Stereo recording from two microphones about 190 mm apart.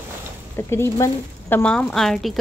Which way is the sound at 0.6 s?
15° left (ahead or behind).